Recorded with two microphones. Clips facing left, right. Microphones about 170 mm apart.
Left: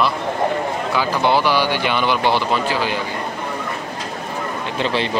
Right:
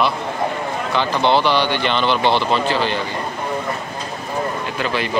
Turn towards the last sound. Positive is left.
turn(degrees=30)  # may be behind; listen again after turning